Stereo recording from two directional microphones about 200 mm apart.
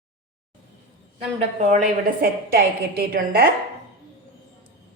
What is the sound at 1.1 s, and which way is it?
A woman's voice, 35° right (ahead or behind).